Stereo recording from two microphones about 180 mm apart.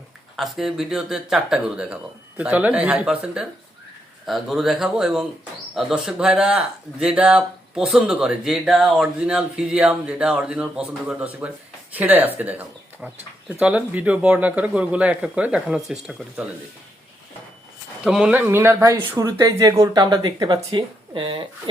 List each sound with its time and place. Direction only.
0.3 s a man's voice: centre (ahead or behind)
18.0 s speech: 5° right (ahead or behind); by 21.4 s 25° right (ahead or behind)